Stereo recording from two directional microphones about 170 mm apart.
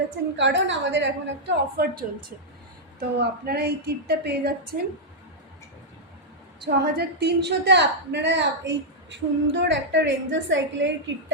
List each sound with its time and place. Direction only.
0.3 s a woman's voice: 90° right; by 4.7 s 70° right (ahead or behind)
6.7 s a woman's voice: 70° right (ahead or behind); by 10.9 s 90° right